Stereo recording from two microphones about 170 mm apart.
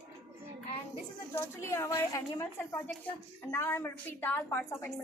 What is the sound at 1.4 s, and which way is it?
A woman's voice, 15° left (ahead or behind).